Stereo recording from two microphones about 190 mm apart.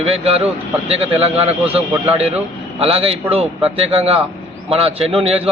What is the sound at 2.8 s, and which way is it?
A man's voice, 30° right (ahead or behind).